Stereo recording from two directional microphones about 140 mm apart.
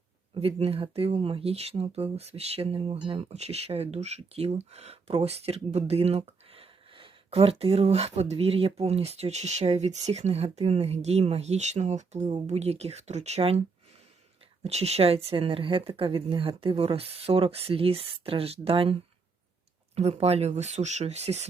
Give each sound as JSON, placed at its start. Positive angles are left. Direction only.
{"t": 0.3, "sound": "speech", "side_deg": -45}
{"t": 14.6, "sound": "speech", "side_deg": -50}
{"t": 20.0, "sound": "speech", "side_deg": -50}